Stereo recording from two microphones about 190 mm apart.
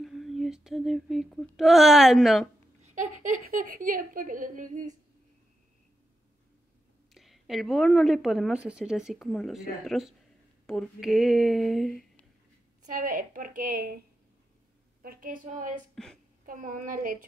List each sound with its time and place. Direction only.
0.0 s a sound: centre (ahead or behind)
2.8 s speech: 40° right (ahead or behind)
7.2 s a woman's voice: centre (ahead or behind)
12.8 s a woman's voice: 45° right (ahead or behind)
15.9 s a woman's voice: 5° left (ahead or behind)
16.4 s a woman's voice: 45° right (ahead or behind)